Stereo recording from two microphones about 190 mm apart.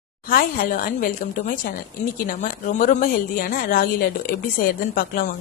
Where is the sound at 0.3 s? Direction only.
50° left (ahead or behind).